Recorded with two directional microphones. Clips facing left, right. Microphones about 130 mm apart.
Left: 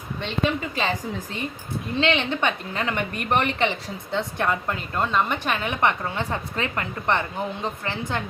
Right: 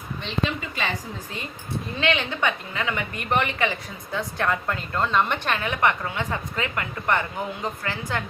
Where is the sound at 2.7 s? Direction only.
35° left (ahead or behind).